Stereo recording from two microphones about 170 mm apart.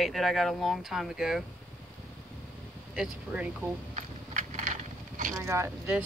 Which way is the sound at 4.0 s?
45° right (ahead or behind).